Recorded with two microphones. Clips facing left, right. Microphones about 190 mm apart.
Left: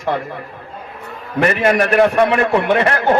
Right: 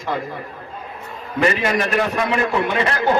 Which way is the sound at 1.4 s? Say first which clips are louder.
Left 4 dB; 55° left (ahead or behind).